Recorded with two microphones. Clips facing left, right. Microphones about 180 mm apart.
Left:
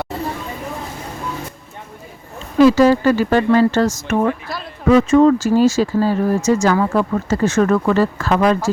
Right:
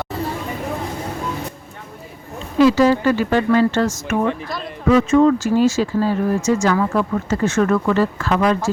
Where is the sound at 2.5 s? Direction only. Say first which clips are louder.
Left 2 dB; 45° left (ahead or behind).